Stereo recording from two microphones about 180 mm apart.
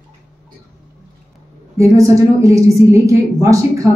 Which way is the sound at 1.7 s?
15° right (ahead or behind).